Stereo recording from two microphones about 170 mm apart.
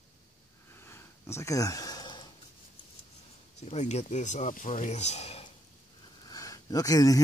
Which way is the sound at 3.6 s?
40° left (ahead or behind).